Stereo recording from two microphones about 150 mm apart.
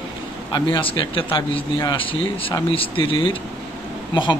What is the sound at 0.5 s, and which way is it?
A man's voice, 35° left (ahead or behind).